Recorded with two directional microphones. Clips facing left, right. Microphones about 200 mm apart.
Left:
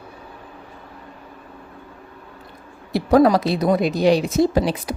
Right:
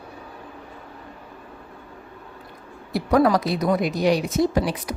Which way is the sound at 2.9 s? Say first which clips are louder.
Left 4 dB; 25° left (ahead or behind).